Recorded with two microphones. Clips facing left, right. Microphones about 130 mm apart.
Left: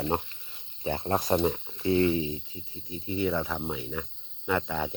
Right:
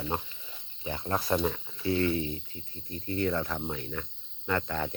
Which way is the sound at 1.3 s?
20° left (ahead or behind).